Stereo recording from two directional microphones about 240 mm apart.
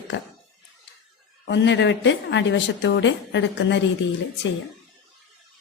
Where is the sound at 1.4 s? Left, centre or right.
Left.